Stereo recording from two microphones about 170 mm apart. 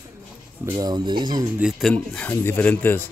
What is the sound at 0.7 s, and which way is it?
Speech, 25° right (ahead or behind).